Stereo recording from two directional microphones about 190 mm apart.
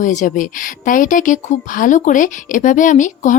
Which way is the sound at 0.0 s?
40° left (ahead or behind).